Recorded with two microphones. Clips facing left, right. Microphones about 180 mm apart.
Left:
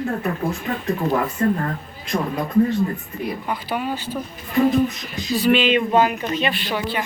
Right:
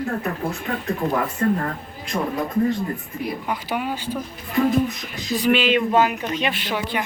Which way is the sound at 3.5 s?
10° right (ahead or behind).